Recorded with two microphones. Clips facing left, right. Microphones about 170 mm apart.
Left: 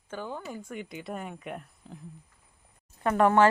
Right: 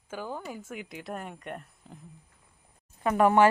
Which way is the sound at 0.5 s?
5° right (ahead or behind).